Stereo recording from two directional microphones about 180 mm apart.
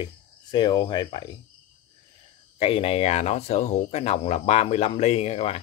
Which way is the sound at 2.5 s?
30° left (ahead or behind).